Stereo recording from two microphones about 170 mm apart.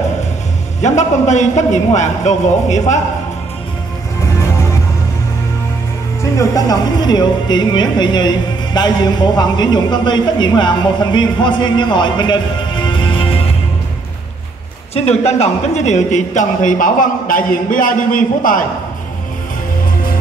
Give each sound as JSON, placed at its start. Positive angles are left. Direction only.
{"t": 0.8, "sound": "a man's voice", "side_deg": 45}
{"t": 6.3, "sound": "speech", "side_deg": 20}
{"t": 15.0, "sound": "a man's voice", "side_deg": 40}